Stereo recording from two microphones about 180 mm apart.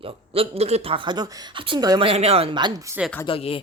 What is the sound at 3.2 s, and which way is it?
Speech, 30° left (ahead or behind).